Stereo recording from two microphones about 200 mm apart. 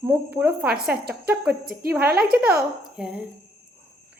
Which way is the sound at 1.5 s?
50° right (ahead or behind).